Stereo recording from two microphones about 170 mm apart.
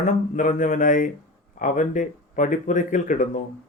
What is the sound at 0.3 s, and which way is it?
Speech, 50° left (ahead or behind).